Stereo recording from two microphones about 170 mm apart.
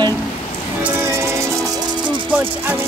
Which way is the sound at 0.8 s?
15° right (ahead or behind).